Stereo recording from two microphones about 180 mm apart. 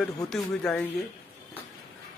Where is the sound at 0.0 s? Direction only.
Centre (ahead or behind).